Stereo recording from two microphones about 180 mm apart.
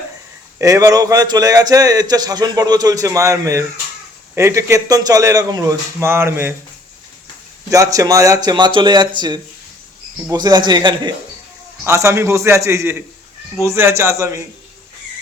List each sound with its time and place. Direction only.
0.6 s a man's voice: 20° right (ahead or behind)
7.7 s a man's voice: 20° right (ahead or behind)